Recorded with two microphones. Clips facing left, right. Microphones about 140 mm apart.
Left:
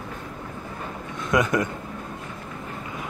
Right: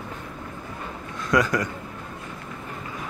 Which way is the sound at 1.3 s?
20° left (ahead or behind).